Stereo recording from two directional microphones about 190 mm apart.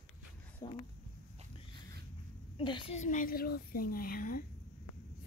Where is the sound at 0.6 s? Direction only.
20° left (ahead or behind).